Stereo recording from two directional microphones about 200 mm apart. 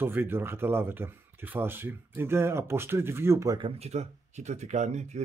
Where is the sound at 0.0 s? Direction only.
10° right (ahead or behind).